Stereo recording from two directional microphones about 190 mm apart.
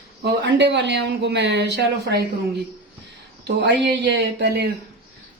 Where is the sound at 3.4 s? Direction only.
65° right (ahead or behind).